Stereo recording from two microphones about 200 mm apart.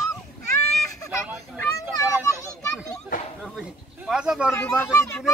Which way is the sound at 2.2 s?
15° left (ahead or behind).